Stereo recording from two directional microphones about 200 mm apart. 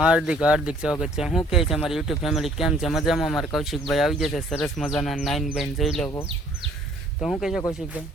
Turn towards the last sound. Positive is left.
turn(degrees=0)  # may be behind; listen again after turning